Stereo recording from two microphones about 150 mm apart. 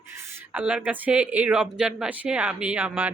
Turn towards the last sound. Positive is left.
turn(degrees=-10)  # may be behind; listen again after turning